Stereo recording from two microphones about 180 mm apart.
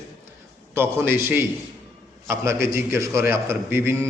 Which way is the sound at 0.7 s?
10° right (ahead or behind).